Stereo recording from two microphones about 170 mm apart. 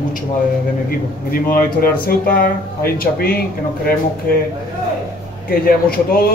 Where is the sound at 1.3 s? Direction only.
60° left (ahead or behind).